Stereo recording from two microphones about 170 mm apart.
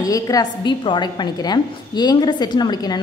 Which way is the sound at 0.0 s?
20° left (ahead or behind).